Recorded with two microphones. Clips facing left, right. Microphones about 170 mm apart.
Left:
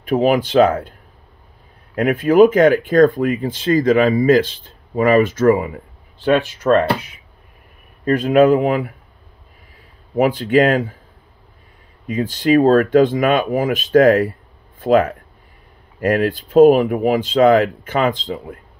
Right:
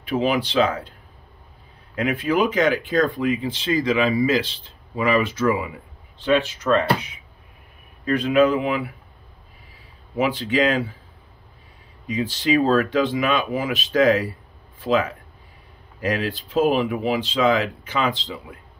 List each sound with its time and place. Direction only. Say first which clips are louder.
0.0 s speech: left 6 dB; 45° left (ahead or behind)
2.0 s speech: left 9 dB; 50° left (ahead or behind)
8.0 s speech: left 5 dB; 45° left (ahead or behind)
10.1 s speech: left 7 dB; 45° left (ahead or behind)
12.1 s speech: left 5 dB; 50° left (ahead or behind)